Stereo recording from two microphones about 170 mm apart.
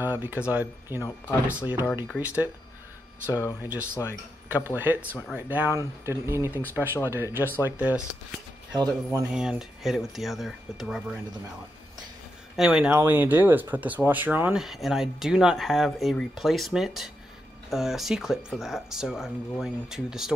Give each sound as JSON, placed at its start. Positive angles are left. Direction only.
{"t": 0.0, "sound": "speech", "side_deg": -10}
{"t": 3.3, "sound": "speech", "side_deg": 15}
{"t": 4.6, "sound": "speech", "side_deg": -10}
{"t": 8.7, "sound": "speech", "side_deg": -25}
{"t": 9.3, "sound": "speech", "side_deg": -5}
{"t": 12.5, "sound": "speech", "side_deg": -5}